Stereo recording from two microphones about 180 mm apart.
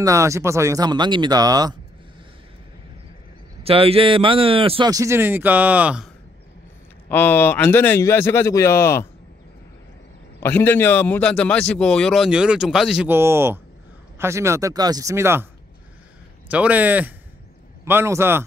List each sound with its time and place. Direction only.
0.0 s speech: 15° right (ahead or behind)
3.6 s speech: 30° right (ahead or behind); by 6.0 s 5° right (ahead or behind)
7.1 s a man's voice: 10° left (ahead or behind)
10.4 s a man's voice: 10° left (ahead or behind); by 15.4 s 15° right (ahead or behind)
16.4 s speech: 10° right (ahead or behind)